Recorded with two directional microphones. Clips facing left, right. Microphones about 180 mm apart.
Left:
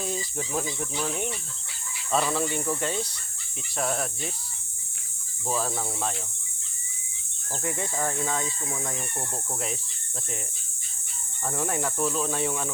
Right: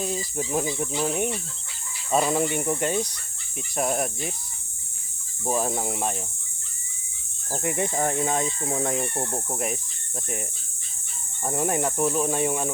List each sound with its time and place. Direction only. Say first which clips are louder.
0.0 s speech: right 3 dB; 5° right (ahead or behind)
5.5 s speech: right 4 dB; 20° right (ahead or behind)
7.5 s speech: right 5 dB; 10° right (ahead or behind)
7.9 s speech: right 3 dB; 25° right (ahead or behind)
11.4 s speech: right 4 dB; 20° right (ahead or behind)